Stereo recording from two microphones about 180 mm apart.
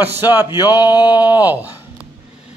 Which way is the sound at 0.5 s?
20° left (ahead or behind).